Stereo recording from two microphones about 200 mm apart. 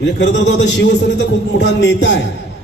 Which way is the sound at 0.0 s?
60° left (ahead or behind).